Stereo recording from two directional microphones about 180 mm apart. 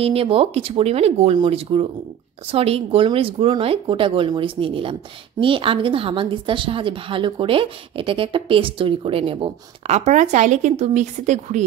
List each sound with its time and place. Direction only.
0.0 s speech: 30° right (ahead or behind)